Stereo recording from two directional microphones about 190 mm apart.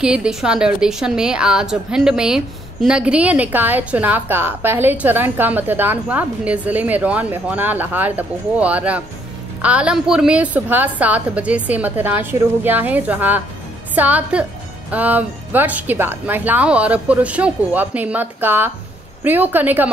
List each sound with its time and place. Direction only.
0.0 s a woman's voice: 5° right (ahead or behind)